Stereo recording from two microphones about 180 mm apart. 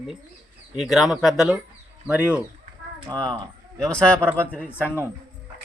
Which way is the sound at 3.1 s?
20° right (ahead or behind).